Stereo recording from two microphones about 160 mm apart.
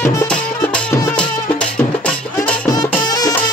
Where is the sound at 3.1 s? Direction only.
25° left (ahead or behind).